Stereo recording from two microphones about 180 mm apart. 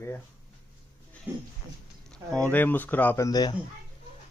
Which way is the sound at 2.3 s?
10° left (ahead or behind).